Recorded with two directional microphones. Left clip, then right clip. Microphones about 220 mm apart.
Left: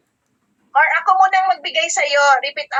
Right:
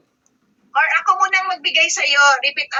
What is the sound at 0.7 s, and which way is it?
A woman's voice, 5° right (ahead or behind).